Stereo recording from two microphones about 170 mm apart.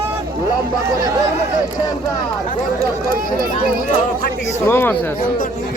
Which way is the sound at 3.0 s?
60° right (ahead or behind).